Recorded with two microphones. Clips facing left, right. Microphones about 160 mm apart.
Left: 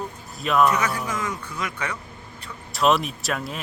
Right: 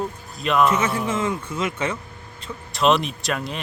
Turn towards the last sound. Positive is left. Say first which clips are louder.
# right 2 dB
turn(degrees=0)  # may be behind; listen again after turning